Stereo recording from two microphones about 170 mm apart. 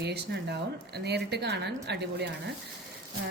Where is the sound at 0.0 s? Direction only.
75° right (ahead or behind).